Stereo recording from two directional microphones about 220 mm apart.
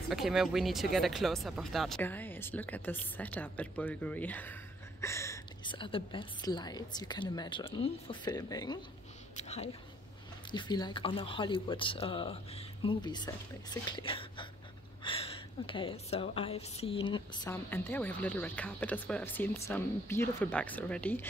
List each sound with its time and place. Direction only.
0.1 s a woman's voice: centre (ahead or behind); by 8.7 s 15° left (ahead or behind)
9.4 s a woman's voice: 30° left (ahead or behind); by 21.3 s 5° left (ahead or behind)